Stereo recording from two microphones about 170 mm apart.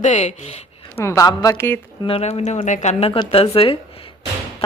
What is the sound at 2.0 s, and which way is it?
Speech, 35° left (ahead or behind).